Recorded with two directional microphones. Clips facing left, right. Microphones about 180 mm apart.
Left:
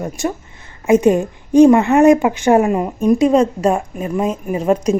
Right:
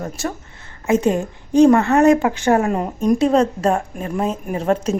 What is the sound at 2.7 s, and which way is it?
Speech, 5° left (ahead or behind).